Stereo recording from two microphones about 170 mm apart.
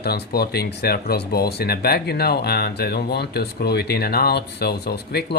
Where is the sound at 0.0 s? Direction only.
70° left (ahead or behind).